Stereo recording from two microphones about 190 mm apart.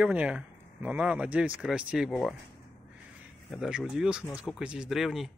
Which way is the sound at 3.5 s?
5° right (ahead or behind).